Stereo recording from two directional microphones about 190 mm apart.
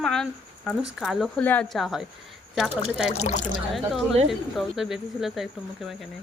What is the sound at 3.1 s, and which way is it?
Speech, 35° left (ahead or behind).